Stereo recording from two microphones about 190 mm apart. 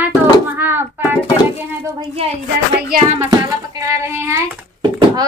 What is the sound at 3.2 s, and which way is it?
Music, 20° right (ahead or behind).